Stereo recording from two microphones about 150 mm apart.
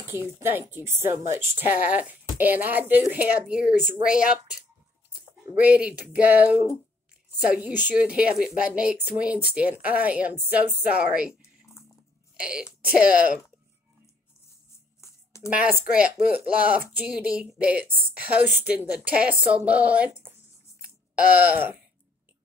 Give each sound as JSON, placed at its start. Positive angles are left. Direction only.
{"t": 0.1, "sound": "a woman's voice", "side_deg": -15}
{"t": 12.4, "sound": "a woman's voice", "side_deg": -5}
{"t": 15.0, "sound": "a sound", "side_deg": 20}
{"t": 15.5, "sound": "a woman's voice", "side_deg": -10}